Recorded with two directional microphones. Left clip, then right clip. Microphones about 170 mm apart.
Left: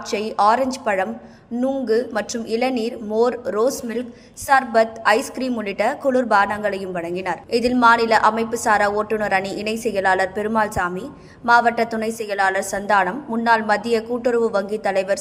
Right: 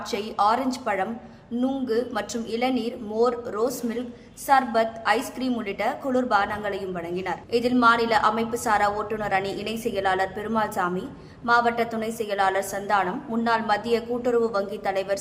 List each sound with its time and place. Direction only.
0.1 s a woman's voice: 25° left (ahead or behind)